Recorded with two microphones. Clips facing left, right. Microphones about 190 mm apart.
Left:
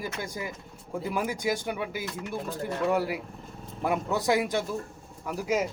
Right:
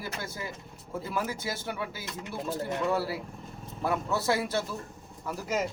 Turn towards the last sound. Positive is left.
turn(degrees=10)  # may be behind; listen again after turning